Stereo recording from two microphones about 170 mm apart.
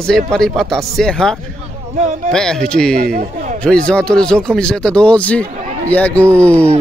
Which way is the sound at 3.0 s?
60° right (ahead or behind).